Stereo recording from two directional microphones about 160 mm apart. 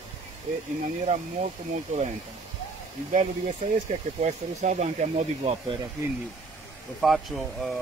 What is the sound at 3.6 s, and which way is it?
Speech, 50° right (ahead or behind).